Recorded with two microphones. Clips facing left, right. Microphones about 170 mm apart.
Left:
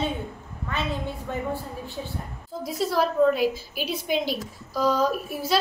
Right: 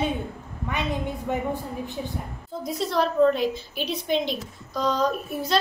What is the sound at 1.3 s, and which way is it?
Speech, 15° right (ahead or behind).